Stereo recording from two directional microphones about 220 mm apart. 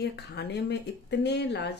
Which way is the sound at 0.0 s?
50° left (ahead or behind).